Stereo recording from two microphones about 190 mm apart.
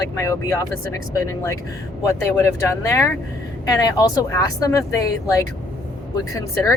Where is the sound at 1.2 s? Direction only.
15° left (ahead or behind).